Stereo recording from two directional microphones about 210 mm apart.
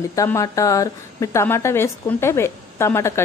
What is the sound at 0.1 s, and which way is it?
A woman's voice, 15° left (ahead or behind).